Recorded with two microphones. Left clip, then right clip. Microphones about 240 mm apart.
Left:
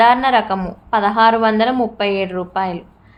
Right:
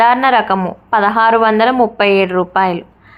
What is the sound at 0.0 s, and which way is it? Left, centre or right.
A woman's voice, centre.